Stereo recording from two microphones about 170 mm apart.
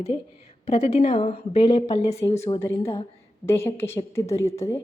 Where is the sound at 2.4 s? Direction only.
15° left (ahead or behind).